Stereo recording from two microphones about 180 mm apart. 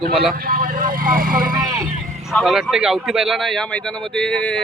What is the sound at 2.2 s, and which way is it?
A man's voice, centre (ahead or behind).